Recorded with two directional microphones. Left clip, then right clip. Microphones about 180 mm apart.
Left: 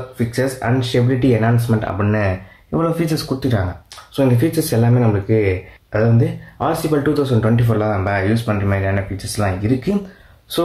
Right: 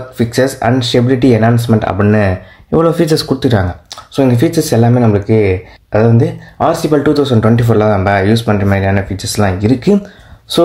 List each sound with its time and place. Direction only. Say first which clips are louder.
0.3 s speech: right 8 dB; 45° right (ahead or behind)